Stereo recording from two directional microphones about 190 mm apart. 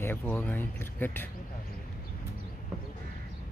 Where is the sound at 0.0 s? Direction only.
10° left (ahead or behind).